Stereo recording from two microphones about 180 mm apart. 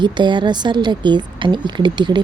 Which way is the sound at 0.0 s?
25° right (ahead or behind).